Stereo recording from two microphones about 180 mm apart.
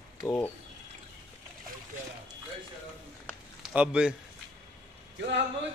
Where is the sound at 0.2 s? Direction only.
10° left (ahead or behind).